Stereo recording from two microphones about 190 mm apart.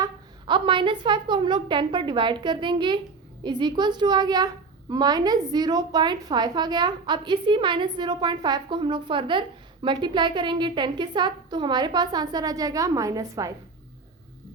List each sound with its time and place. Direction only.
0.0 s a woman's voice: 25° right (ahead or behind)